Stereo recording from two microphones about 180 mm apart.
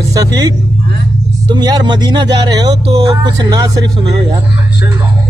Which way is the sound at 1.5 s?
25° right (ahead or behind).